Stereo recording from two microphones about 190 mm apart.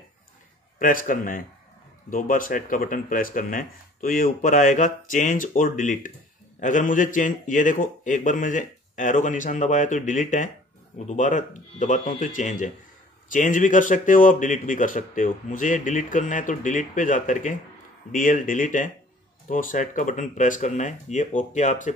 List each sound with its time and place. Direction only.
0.7 s a man's voice: 45° left (ahead or behind)